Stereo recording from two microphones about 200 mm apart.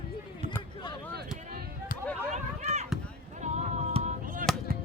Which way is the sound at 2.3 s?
35° right (ahead or behind).